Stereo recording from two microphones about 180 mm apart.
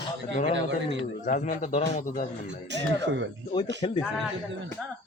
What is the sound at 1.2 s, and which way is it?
A man's voice, 45° left (ahead or behind).